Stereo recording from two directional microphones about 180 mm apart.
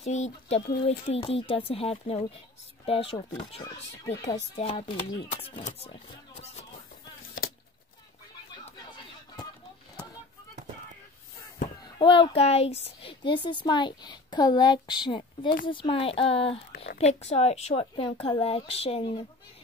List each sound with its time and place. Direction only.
0.1 s a child's voice: 35° left (ahead or behind)
11.8 s a woman's voice: 25° left (ahead or behind)